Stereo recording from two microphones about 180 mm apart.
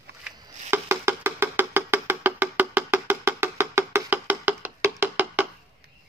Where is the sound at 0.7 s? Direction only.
15° right (ahead or behind).